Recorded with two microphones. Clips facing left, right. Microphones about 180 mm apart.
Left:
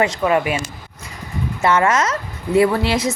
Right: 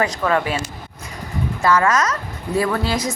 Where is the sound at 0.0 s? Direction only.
20° left (ahead or behind).